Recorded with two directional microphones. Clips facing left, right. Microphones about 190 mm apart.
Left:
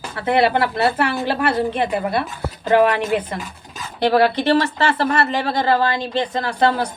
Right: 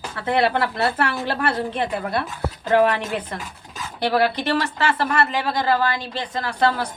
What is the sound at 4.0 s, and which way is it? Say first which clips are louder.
Speech: left 4 dB; 25° left (ahead or behind).